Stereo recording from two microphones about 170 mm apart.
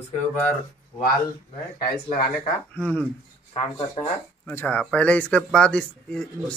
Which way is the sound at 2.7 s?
10° left (ahead or behind).